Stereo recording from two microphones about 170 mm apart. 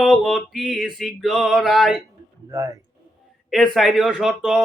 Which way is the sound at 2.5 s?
20° right (ahead or behind).